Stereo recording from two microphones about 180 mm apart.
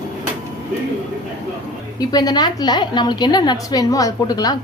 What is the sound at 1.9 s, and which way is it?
A woman's voice, 20° left (ahead or behind).